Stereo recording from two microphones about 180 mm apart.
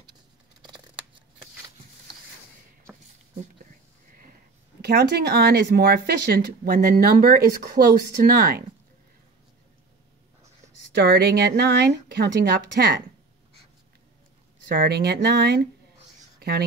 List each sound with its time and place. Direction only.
0.6 s scissors: 25° right (ahead or behind)
4.8 s speech: 65° right (ahead or behind)
11.0 s speech: 70° right (ahead or behind)
14.8 s speech: 65° right (ahead or behind)
16.3 s writing: 65° right (ahead or behind)